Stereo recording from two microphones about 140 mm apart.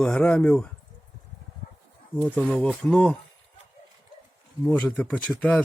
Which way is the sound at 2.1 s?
10° left (ahead or behind).